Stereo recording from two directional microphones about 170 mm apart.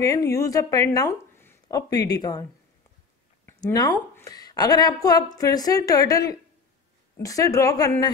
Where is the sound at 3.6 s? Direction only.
20° left (ahead or behind).